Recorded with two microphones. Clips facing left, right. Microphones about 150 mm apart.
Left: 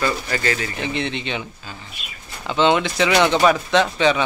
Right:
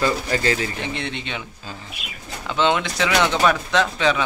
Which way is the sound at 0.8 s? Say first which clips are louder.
Left 4 dB; centre (ahead or behind).